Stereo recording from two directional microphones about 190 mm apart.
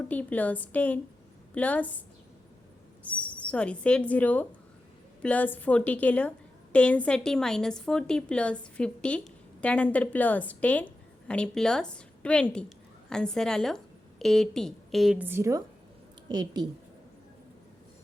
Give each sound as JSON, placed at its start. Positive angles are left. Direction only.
{"t": 0.0, "sound": "speech", "side_deg": 10}
{"t": 3.0, "sound": "a woman's voice", "side_deg": 5}